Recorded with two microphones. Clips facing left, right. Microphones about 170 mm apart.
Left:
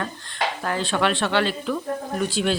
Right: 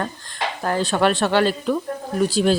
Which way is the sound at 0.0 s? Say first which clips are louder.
Right 1 dB; 40° right (ahead or behind).